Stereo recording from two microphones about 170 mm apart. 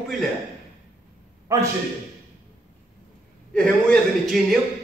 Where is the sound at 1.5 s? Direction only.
20° right (ahead or behind).